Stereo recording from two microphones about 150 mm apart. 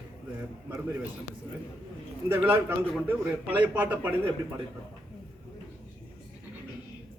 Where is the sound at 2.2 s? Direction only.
15° right (ahead or behind).